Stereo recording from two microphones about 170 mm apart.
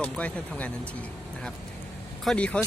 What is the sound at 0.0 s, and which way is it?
Speech, 10° left (ahead or behind).